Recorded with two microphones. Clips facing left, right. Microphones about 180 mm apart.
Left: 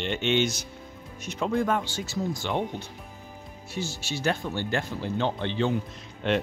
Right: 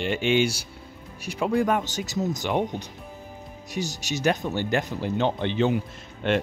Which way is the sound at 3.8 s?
10° right (ahead or behind).